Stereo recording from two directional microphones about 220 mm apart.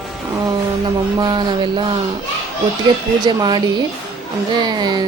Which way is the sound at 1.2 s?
20° right (ahead or behind).